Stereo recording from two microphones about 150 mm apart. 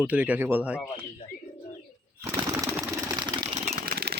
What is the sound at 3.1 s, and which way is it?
Typewriter, 30° right (ahead or behind).